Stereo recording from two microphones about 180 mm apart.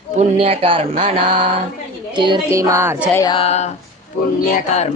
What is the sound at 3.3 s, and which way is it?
Speech, 35° left (ahead or behind).